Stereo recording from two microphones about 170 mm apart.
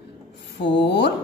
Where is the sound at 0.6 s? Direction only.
90° left.